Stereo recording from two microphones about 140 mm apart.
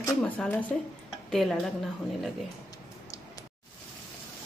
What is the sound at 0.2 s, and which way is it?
A woman's voice, 10° left (ahead or behind).